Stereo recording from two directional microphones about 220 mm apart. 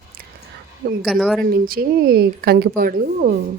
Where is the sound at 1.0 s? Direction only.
Centre (ahead or behind).